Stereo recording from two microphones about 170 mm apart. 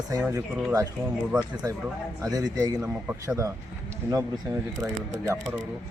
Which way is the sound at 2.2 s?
20° right (ahead or behind).